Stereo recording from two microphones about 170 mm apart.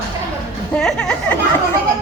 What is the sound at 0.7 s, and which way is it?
Speech, 5° left (ahead or behind).